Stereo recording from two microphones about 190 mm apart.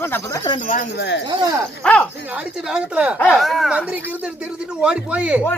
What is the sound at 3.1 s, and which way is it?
Speech, 5° left (ahead or behind).